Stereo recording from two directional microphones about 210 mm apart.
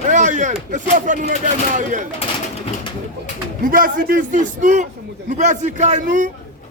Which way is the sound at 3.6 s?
40° right (ahead or behind).